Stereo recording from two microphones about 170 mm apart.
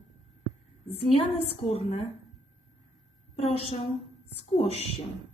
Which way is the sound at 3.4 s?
35° left (ahead or behind).